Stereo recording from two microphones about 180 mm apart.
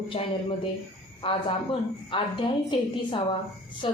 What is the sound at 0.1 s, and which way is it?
A woman's voice, 30° left (ahead or behind).